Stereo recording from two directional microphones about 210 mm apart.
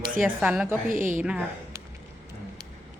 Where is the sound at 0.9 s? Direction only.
40° right (ahead or behind).